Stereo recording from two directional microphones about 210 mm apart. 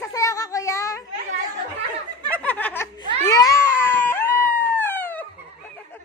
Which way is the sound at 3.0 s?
15° left (ahead or behind).